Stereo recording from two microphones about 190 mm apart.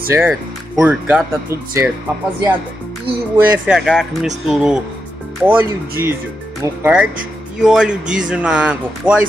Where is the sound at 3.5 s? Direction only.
5° right (ahead or behind).